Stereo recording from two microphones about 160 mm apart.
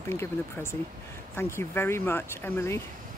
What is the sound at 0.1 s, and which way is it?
Speech, 15° left (ahead or behind).